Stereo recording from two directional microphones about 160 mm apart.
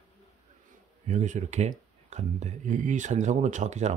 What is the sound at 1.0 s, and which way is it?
Speech, 50° right (ahead or behind).